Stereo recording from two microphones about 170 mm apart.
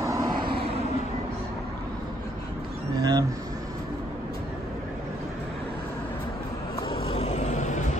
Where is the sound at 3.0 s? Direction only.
25° right (ahead or behind).